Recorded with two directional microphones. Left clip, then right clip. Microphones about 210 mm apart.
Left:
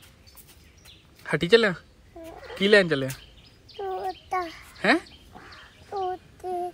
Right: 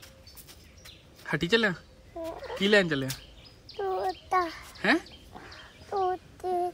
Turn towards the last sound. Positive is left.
turn(degrees=0)  # may be behind; listen again after turning